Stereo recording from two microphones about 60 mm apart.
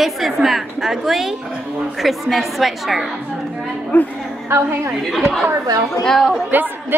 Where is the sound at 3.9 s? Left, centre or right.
Left.